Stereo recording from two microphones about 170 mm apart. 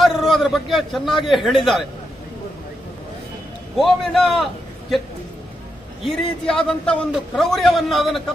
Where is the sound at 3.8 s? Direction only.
Centre (ahead or behind).